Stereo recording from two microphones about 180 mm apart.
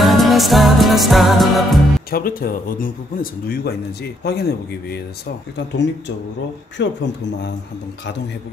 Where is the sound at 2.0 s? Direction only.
55° left (ahead or behind); by 8.4 s 75° left (ahead or behind).